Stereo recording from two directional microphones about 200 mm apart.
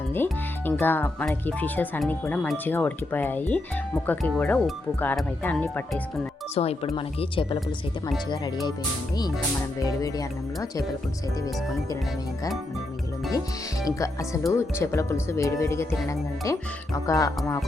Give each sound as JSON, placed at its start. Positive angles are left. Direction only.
{"t": 0.1, "sound": "speech", "side_deg": 10}
{"t": 6.5, "sound": "speech", "side_deg": 30}
{"t": 9.8, "sound": "speech", "side_deg": 20}
{"t": 13.8, "sound": "speech", "side_deg": 15}